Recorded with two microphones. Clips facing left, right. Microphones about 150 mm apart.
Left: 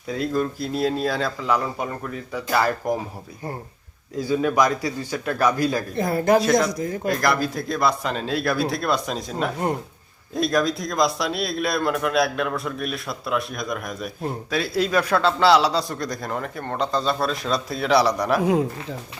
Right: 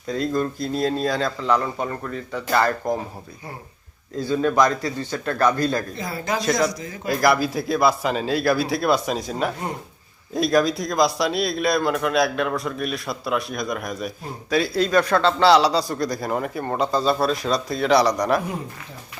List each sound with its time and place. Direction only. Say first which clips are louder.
0.1 s speech: right 1 dB; 5° left (ahead or behind)
4.2 s a man's voice: right 1 dB; 10° left (ahead or behind)
6.0 s speech: left 8 dB; 55° left (ahead or behind)
6.4 s speech: left 2 dB; centre (ahead or behind)
6.7 s speech: left 5 dB; 50° left (ahead or behind)
7.1 s speech: right 4 dB; 5° right (ahead or behind)
18.4 s speech: left 10 dB; 90° left